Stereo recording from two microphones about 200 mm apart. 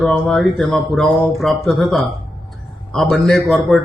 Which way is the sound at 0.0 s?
Centre (ahead or behind).